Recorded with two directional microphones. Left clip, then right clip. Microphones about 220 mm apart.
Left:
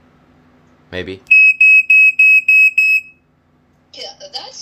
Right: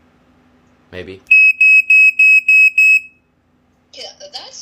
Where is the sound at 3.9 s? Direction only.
20° right (ahead or behind).